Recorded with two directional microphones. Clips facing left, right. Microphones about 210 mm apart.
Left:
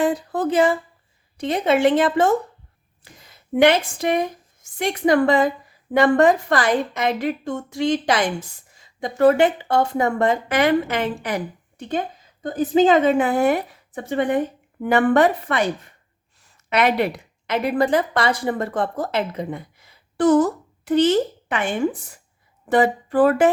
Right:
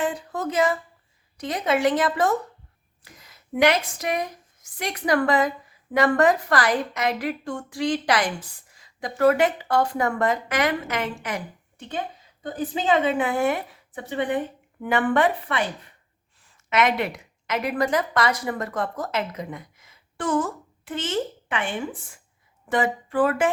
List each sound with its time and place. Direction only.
0.0 s a woman's voice: 35° left (ahead or behind)
11.9 s a sound: 45° left (ahead or behind)
12.8 s a woman's voice: 45° left (ahead or behind)